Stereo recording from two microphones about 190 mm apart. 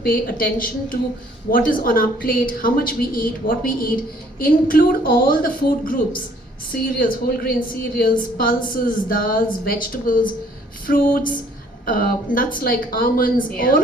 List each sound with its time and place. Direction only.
0.0 s a woman's voice: 50° left (ahead or behind)